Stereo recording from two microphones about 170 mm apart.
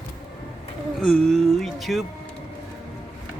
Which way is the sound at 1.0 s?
Centre (ahead or behind).